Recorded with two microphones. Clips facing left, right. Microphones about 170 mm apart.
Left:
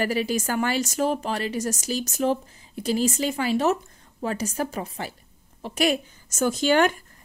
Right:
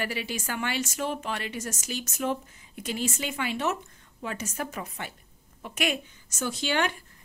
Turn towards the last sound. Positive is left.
turn(degrees=45)  # may be behind; listen again after turning